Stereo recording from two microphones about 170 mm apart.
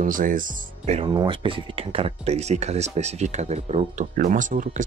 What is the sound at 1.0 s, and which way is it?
Speech, 30° right (ahead or behind).